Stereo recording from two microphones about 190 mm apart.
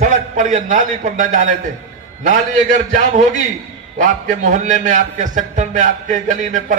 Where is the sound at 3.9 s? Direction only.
40° right (ahead or behind).